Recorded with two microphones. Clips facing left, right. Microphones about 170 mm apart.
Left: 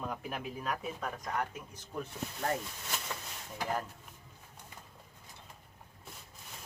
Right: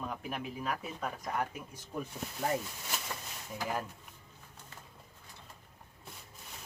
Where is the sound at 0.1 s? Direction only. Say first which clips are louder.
Even; centre (ahead or behind).